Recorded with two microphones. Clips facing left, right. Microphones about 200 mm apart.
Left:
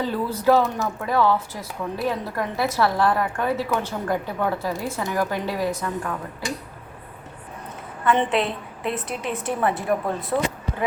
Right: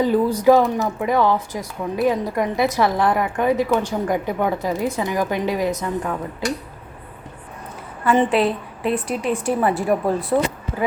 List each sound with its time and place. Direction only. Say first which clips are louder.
0.0 s speech: right 6 dB; 15° right (ahead or behind)
8.0 s a woman's voice: right 4 dB; 5° right (ahead or behind)
9.7 s speech: right 5 dB; 30° right (ahead or behind)